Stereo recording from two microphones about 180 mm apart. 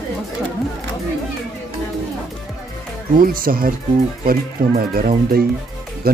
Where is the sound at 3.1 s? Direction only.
50° right (ahead or behind).